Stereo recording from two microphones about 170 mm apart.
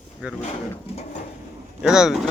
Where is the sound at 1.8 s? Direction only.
5° right (ahead or behind).